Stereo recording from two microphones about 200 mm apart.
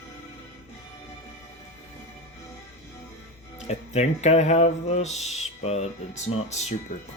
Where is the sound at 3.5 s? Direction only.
35° left (ahead or behind).